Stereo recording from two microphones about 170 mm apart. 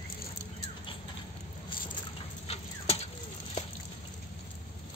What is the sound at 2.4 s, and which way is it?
Tick-tock, 40° left (ahead or behind).